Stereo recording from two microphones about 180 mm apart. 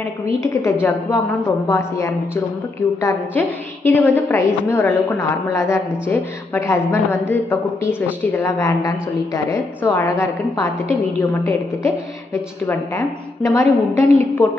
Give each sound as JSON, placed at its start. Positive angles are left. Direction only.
{"t": 0.4, "sound": "a woman's voice", "side_deg": 15}